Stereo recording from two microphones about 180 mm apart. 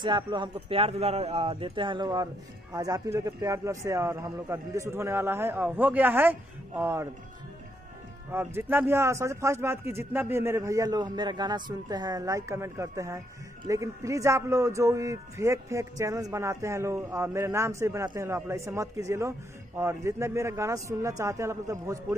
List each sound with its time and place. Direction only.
0.0 s a man's voice: 25° right (ahead or behind)
8.3 s a man's voice: 10° right (ahead or behind)